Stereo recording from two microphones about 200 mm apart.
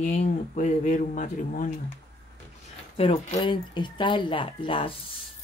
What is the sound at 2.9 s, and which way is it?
Speech, 30° left (ahead or behind).